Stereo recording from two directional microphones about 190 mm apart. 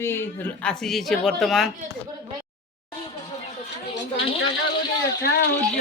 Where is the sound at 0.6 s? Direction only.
5° left (ahead or behind).